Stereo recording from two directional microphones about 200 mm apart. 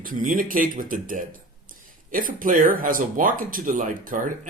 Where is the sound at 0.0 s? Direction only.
40° right (ahead or behind).